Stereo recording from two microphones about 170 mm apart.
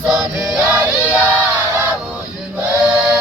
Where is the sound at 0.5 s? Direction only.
10° right (ahead or behind).